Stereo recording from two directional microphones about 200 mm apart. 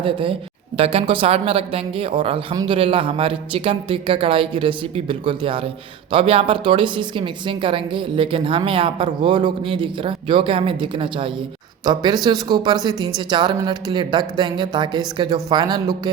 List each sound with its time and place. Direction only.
0.0 s a woman's voice: 25° right (ahead or behind)